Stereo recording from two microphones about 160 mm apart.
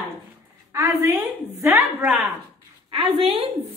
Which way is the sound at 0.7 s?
15° right (ahead or behind).